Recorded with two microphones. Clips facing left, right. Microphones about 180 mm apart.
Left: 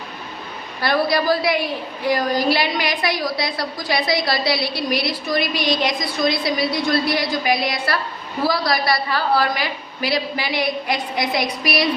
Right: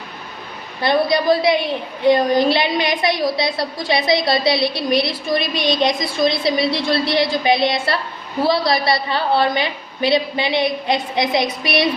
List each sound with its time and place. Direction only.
0.8 s a woman's voice: 20° right (ahead or behind)